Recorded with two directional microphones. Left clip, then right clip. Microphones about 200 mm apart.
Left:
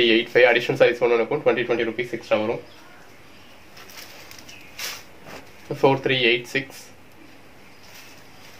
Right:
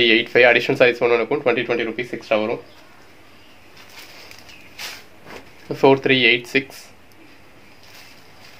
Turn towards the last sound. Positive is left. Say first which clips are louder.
# right 4 dB
turn(degrees=-50)  # may be behind; listen again after turning